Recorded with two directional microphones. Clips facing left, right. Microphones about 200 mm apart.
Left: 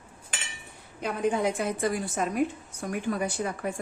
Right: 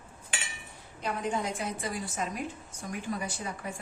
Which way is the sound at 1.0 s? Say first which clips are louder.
Left 6 dB; 60° left (ahead or behind).